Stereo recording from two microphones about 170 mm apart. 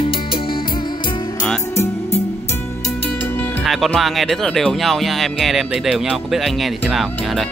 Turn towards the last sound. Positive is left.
turn(degrees=5)  # may be behind; listen again after turning